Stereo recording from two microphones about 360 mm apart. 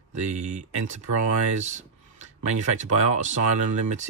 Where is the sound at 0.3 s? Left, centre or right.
Centre.